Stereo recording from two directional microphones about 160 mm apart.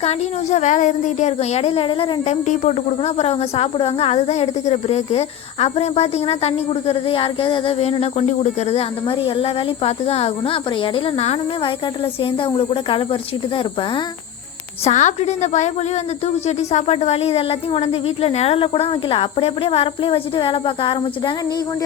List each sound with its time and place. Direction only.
0.0 s speech: 45° left (ahead or behind)
14.8 s a woman's voice: 45° left (ahead or behind)